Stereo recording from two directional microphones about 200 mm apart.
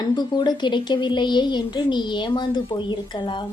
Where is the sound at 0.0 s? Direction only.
20° left (ahead or behind).